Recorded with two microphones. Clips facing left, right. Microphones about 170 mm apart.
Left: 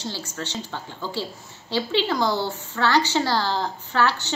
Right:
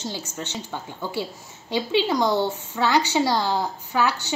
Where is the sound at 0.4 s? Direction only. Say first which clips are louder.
Even; 15° right (ahead or behind).